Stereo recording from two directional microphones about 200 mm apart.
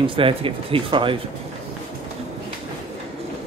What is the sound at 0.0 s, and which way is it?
Speech, 25° right (ahead or behind).